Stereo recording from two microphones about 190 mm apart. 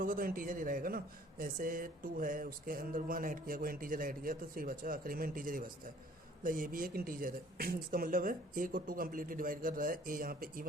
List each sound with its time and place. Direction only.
0.0 s speech: 45° right (ahead or behind)